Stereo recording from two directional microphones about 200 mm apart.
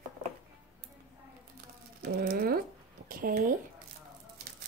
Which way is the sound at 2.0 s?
50° right (ahead or behind).